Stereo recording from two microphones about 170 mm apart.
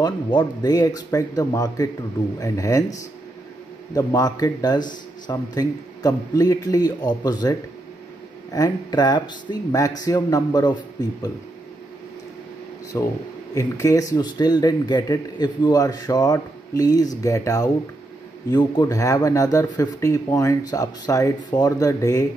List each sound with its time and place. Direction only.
0.0 s speech: 25° left (ahead or behind)
8.5 s speech: 25° left (ahead or behind)
12.9 s speech: 15° left (ahead or behind)